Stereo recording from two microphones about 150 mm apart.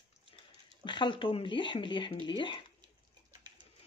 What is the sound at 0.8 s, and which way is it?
Speech, 30° left (ahead or behind).